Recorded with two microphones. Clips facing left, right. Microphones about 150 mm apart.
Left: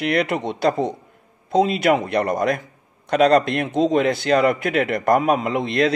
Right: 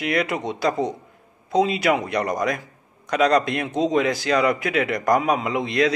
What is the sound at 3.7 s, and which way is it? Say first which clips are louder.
Speech: left 4 dB; 25° left (ahead or behind).